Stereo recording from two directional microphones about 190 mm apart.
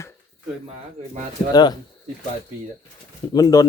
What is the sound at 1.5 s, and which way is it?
Speech, 20° left (ahead or behind).